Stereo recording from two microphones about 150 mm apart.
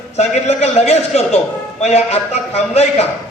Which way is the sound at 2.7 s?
45° left (ahead or behind).